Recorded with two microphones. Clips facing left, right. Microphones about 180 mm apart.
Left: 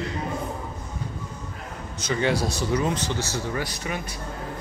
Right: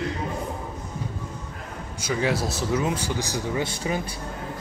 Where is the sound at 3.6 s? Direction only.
30° right (ahead or behind).